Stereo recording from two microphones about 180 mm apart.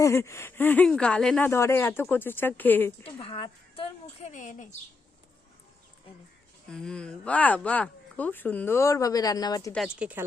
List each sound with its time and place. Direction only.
0.0 s speech: 15° left (ahead or behind)
3.0 s speech: 30° left (ahead or behind)
4.3 s a woman's voice: 45° left (ahead or behind)
6.7 s speech: 5° left (ahead or behind); by 9.7 s 20° left (ahead or behind)
9.7 s speech: 5° right (ahead or behind)